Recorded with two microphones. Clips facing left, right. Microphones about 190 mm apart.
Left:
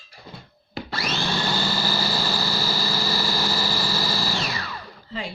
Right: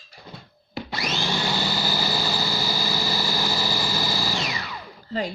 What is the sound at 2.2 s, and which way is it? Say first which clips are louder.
Vehicle: even; 15° right (ahead or behind).